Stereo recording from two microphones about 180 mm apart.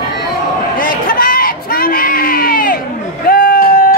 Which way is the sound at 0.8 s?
50° left (ahead or behind).